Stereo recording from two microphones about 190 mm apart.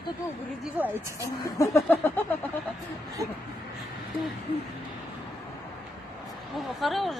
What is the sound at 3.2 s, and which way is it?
Speech, 15° right (ahead or behind).